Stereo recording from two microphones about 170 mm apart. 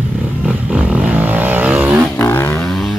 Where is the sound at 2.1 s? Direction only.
10° left (ahead or behind).